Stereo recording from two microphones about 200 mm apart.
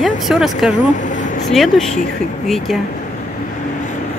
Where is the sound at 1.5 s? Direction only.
Centre (ahead or behind).